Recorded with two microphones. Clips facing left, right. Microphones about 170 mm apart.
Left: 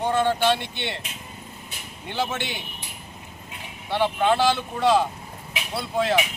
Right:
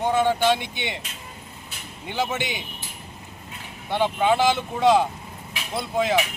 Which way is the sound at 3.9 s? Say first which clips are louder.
Even; 15° right (ahead or behind).